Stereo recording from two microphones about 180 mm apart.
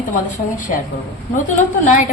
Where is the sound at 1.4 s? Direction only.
45° left (ahead or behind).